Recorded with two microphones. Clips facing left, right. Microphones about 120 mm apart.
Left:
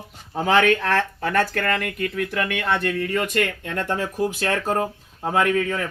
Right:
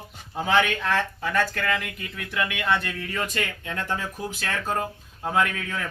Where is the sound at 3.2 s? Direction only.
65° left (ahead or behind).